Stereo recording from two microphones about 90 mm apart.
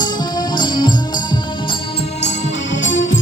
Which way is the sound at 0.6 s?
55° left (ahead or behind).